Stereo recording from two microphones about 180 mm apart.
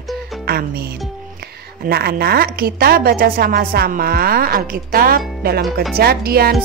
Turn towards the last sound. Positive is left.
turn(degrees=-60)  # may be behind; listen again after turning